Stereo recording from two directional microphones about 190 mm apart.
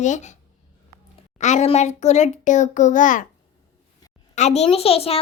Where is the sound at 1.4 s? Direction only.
35° left (ahead or behind).